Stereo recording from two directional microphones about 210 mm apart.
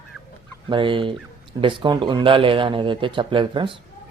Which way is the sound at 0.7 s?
25° right (ahead or behind).